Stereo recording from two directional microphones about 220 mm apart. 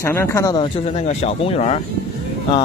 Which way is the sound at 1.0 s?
25° left (ahead or behind).